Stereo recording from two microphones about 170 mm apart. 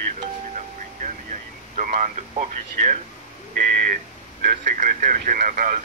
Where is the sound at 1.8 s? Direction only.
45° right (ahead or behind).